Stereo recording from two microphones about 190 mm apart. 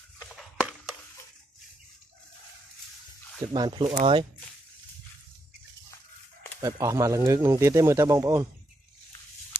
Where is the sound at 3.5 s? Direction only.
25° right (ahead or behind).